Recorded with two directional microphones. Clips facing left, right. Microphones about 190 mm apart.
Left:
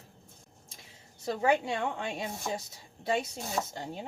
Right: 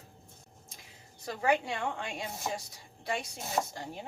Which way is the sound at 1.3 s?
25° left (ahead or behind).